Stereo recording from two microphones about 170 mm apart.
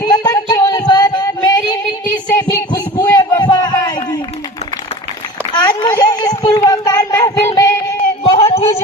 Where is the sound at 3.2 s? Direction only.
25° left (ahead or behind).